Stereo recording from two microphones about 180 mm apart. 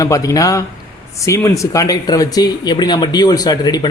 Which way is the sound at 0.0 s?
20° left (ahead or behind).